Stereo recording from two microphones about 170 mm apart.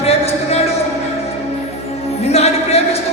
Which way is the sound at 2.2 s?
40° left (ahead or behind).